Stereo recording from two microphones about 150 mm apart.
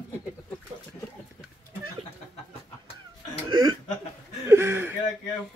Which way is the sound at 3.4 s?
30° right (ahead or behind).